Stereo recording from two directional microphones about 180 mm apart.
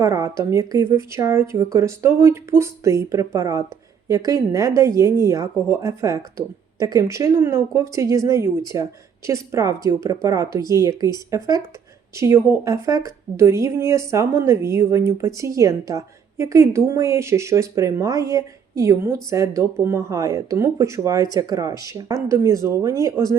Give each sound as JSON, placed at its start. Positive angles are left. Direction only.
{"t": 0.0, "sound": "a woman's voice", "side_deg": -15}